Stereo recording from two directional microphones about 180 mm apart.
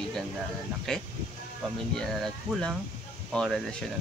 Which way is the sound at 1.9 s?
5° left (ahead or behind).